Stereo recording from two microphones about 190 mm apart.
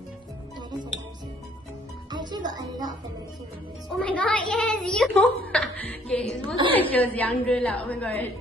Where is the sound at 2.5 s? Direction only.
20° right (ahead or behind).